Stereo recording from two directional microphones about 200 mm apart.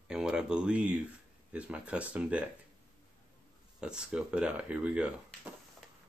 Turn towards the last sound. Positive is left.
turn(degrees=-5)  # may be behind; listen again after turning